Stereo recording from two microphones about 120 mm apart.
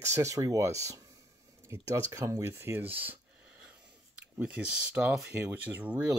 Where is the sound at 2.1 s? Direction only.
25° right (ahead or behind).